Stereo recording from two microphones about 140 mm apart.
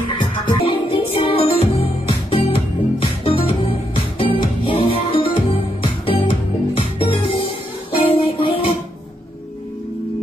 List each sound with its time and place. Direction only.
0.2 s music: 40° left (ahead or behind)
4.6 s music: 40° left (ahead or behind)